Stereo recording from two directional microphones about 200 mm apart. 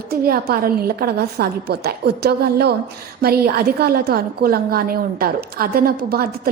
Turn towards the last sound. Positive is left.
turn(degrees=-50)  # may be behind; listen again after turning